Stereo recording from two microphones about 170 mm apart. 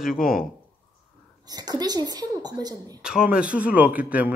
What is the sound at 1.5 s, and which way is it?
A woman's voice, 25° right (ahead or behind).